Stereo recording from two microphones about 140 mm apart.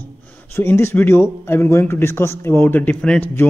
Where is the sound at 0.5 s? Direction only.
15° left (ahead or behind).